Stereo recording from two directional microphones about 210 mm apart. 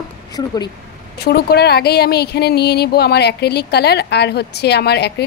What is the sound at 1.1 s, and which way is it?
Speech, 50° left (ahead or behind).